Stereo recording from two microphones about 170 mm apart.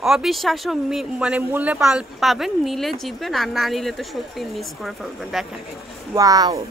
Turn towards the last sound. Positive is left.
turn(degrees=-20)  # may be behind; listen again after turning